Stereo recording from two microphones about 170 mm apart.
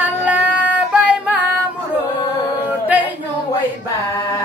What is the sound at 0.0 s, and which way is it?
Female singing, 10° right (ahead or behind).